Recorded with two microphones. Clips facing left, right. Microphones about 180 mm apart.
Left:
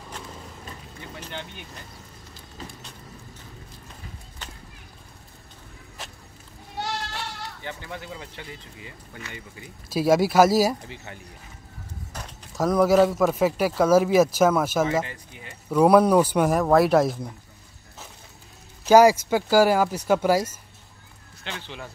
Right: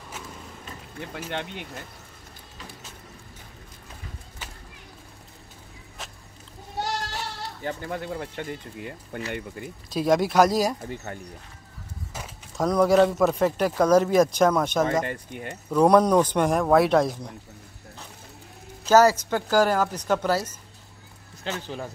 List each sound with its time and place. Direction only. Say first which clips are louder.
1.3 s speech: right 7 dB; 75° right (ahead or behind)
4.4 s a sound: left 1 dB; 10° right (ahead or behind)
6.0 s a sound: even; centre (ahead or behind)
7.6 s speech: right 7 dB; 45° right (ahead or behind); by 9.2 s 60° right (ahead or behind)
9.8 s speech: left 2 dB; 5° left (ahead or behind)
11.1 s speech: right 5 dB; 45° right (ahead or behind)
12.1 s speech: right 1 dB; centre (ahead or behind)
15.0 s speech: right 9 dB; 55° right (ahead or behind)
15.7 s speech: left 1 dB; 5° left (ahead or behind)
18.9 s speech: left 3 dB; 10° left (ahead or behind)
21.5 s speech: right 5 dB; 40° right (ahead or behind)